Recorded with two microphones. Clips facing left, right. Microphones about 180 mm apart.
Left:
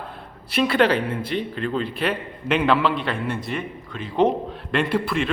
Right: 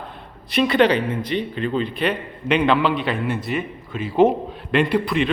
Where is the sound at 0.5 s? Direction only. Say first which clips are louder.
Right 2 dB; 5° left (ahead or behind).